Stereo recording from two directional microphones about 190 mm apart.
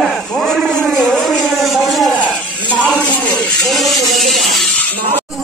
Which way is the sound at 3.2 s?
Centre (ahead or behind).